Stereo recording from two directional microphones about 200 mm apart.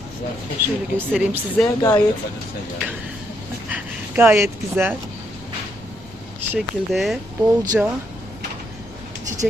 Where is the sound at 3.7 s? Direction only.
10° right (ahead or behind).